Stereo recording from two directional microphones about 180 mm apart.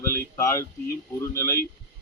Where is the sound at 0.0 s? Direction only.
15° left (ahead or behind).